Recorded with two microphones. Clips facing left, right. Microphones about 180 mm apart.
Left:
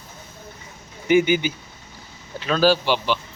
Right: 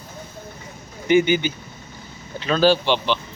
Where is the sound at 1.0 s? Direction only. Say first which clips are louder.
Right 1 dB; 5° left (ahead or behind).